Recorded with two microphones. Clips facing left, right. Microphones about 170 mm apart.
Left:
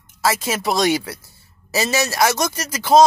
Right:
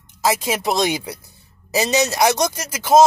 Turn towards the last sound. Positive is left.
turn(degrees=-10)  # may be behind; listen again after turning